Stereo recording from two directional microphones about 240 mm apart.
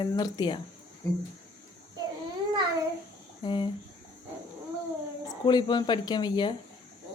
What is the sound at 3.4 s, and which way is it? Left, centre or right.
Speech, centre.